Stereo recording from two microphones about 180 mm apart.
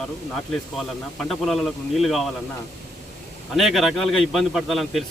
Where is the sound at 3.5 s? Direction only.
Centre (ahead or behind).